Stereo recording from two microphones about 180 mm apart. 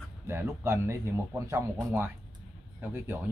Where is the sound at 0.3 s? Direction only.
15° right (ahead or behind).